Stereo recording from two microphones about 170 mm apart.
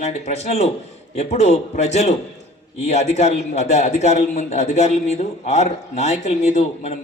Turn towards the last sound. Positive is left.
turn(degrees=40)  # may be behind; listen again after turning